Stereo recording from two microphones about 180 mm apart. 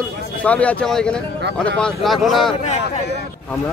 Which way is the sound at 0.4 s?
5° left (ahead or behind).